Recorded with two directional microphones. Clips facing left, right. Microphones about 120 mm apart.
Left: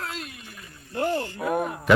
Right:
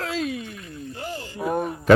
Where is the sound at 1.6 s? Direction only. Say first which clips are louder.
Right 1 dB; 90° left.